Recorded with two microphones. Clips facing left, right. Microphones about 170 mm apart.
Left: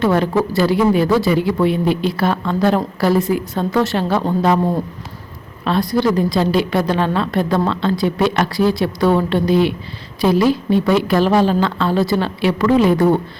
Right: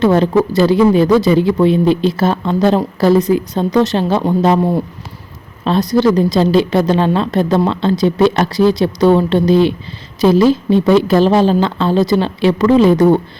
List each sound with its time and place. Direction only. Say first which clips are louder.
0.0 s a woman's voice: right 4 dB; 25° right (ahead or behind)
5.6 s a woman's voice: right 4 dB; 25° right (ahead or behind)